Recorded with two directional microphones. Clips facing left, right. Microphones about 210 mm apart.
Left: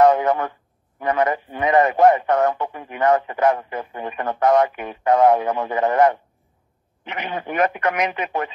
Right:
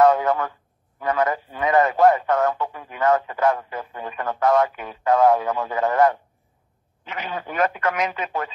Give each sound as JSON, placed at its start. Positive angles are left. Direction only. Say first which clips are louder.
{"t": 0.0, "sound": "speech", "louder": "left 2 dB", "side_deg": 20}